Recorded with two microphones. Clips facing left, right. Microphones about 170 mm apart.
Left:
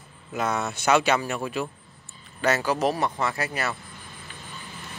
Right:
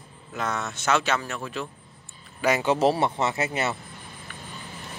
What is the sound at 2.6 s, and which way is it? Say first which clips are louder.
Speech: right 3 dB; 25° right (ahead or behind).